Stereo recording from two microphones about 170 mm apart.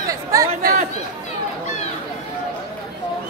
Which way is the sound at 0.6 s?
60° right (ahead or behind).